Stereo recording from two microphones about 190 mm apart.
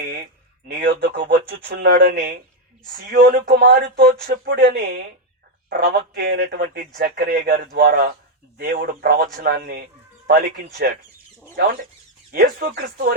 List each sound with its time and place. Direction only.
0.7 s a man's voice: 60° right (ahead or behind)